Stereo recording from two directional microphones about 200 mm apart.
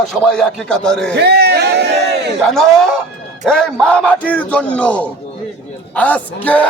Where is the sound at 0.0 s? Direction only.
Centre (ahead or behind).